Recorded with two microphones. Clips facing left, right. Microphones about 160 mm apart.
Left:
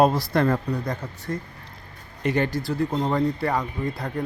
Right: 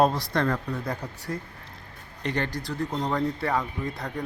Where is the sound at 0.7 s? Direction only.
10° right (ahead or behind).